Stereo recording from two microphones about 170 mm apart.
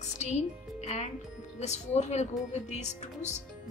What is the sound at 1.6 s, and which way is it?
A woman's voice, 40° left (ahead or behind).